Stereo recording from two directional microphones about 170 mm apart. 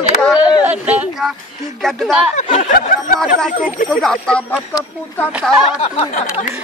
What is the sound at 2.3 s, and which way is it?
Speech, 40° left (ahead or behind).